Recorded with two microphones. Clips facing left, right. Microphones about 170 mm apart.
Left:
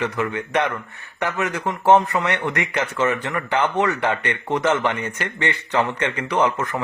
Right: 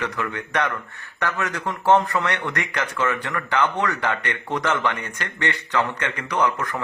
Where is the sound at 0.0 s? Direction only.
20° left (ahead or behind).